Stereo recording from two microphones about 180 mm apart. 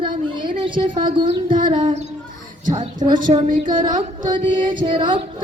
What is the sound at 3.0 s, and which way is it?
Speech, 40° right (ahead or behind).